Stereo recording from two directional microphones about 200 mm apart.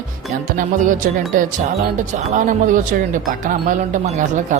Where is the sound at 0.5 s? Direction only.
40° right (ahead or behind).